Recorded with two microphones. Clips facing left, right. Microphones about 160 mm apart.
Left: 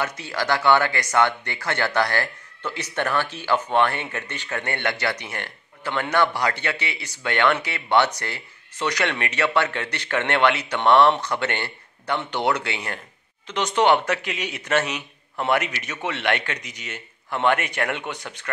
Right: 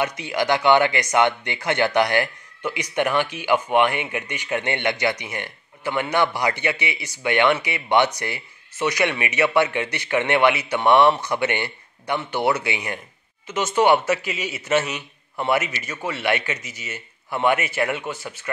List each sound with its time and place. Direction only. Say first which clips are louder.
0.0 s a man's voice: right 4 dB; 15° right (ahead or behind)